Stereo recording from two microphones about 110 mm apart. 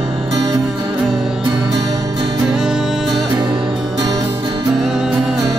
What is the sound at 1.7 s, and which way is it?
Music, 40° right (ahead or behind).